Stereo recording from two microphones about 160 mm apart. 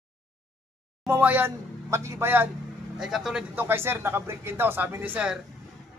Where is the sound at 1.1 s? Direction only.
15° right (ahead or behind).